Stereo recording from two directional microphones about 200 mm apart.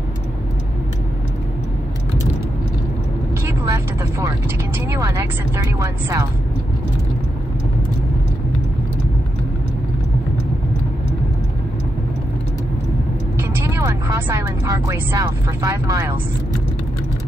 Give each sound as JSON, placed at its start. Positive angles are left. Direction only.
{"t": 3.4, "sound": "vehicle", "side_deg": -15}
{"t": 4.7, "sound": "speech", "side_deg": -10}
{"t": 13.4, "sound": "speech", "side_deg": -15}